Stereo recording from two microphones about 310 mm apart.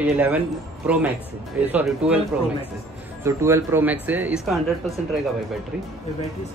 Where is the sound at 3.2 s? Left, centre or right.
Centre.